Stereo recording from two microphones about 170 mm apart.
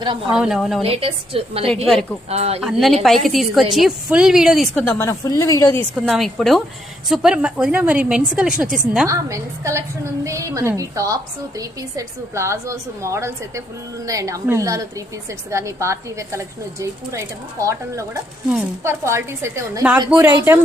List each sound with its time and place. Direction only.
0.3 s a woman's voice: 5° right (ahead or behind)
0.8 s a woman's voice: 35° right (ahead or behind)
1.9 s a woman's voice: 5° left (ahead or behind)
2.3 s a woman's voice: 40° right (ahead or behind)
2.6 s a woman's voice: centre (ahead or behind); by 5.8 s 15° left (ahead or behind)
6.1 s a woman's voice: centre (ahead or behind)
9.0 s a woman's voice: 15° right (ahead or behind)